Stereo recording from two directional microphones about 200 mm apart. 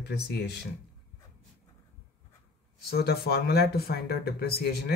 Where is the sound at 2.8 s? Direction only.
55° left (ahead or behind).